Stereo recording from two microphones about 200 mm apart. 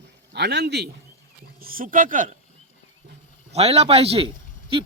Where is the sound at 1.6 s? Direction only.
45° right (ahead or behind).